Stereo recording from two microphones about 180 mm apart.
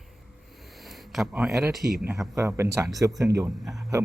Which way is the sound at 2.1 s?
15° right (ahead or behind).